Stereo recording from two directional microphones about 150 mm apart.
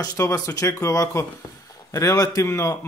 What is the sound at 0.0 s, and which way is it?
A man's voice, 25° left (ahead or behind).